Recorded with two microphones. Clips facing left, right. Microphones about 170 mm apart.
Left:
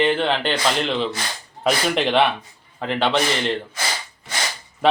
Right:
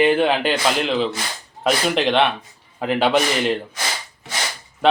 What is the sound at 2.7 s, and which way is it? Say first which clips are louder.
Speech: right 3 dB; 10° right (ahead or behind).